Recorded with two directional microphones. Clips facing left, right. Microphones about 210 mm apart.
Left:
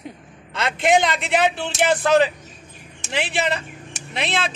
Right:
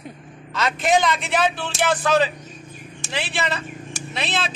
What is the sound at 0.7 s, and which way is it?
Speech, 65° left (ahead or behind).